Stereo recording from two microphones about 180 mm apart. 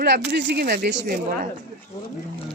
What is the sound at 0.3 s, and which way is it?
Speech, 70° right (ahead or behind).